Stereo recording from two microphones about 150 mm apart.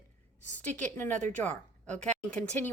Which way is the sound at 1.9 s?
55° right (ahead or behind).